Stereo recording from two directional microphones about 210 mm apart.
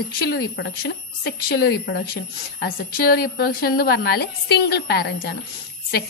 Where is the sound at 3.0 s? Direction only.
45° left (ahead or behind).